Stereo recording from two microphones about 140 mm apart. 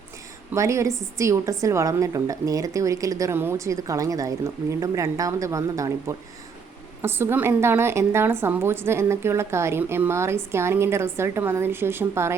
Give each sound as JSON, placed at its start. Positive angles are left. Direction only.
{"t": 0.5, "sound": "a woman's voice", "side_deg": -20}